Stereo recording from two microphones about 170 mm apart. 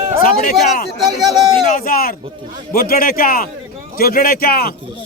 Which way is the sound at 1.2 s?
20° right (ahead or behind).